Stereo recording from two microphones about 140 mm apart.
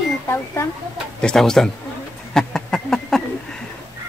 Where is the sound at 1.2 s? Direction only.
5° left (ahead or behind).